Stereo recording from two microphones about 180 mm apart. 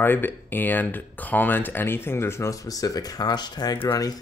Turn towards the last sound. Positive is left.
turn(degrees=15)  # may be behind; listen again after turning